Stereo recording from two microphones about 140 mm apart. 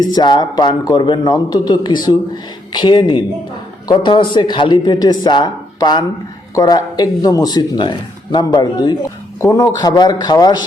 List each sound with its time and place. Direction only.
0.0 s speech: 30° left (ahead or behind)